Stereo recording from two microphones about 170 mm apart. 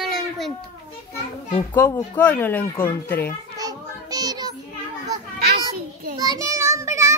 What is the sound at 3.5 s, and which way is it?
Children playing, 20° right (ahead or behind).